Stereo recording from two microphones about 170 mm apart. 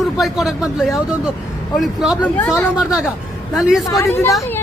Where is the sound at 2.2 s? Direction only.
10° left (ahead or behind).